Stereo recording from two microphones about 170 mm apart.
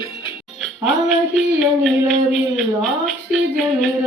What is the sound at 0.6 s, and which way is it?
Music, centre (ahead or behind).